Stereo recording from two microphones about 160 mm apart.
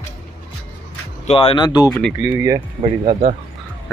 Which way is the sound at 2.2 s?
20° right (ahead or behind).